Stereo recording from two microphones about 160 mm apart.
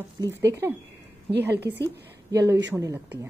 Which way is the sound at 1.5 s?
90° right.